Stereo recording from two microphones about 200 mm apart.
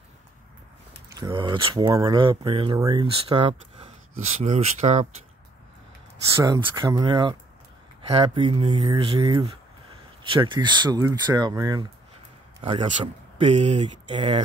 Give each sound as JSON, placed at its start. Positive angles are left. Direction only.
{"t": 1.2, "sound": "speech", "side_deg": -25}
{"t": 6.3, "sound": "speech", "side_deg": -20}